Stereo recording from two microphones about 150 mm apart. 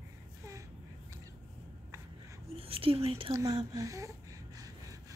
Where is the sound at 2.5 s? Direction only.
40° right (ahead or behind).